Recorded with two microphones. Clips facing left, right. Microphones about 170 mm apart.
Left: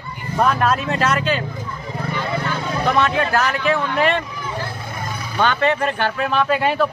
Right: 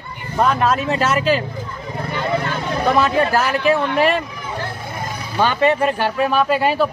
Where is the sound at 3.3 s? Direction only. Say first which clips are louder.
Right 2 dB; 10° right (ahead or behind).